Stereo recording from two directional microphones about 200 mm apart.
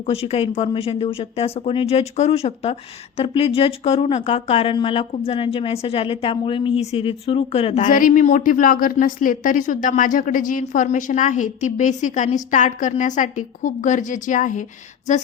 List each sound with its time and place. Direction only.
0.1 s speech: 30° left (ahead or behind)